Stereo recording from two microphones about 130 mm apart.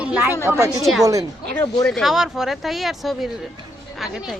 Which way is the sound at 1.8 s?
Centre (ahead or behind).